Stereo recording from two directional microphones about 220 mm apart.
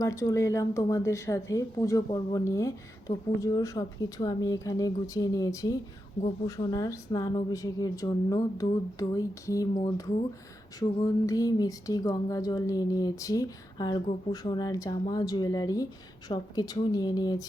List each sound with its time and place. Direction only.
0.0 s a woman's voice: 15° left (ahead or behind)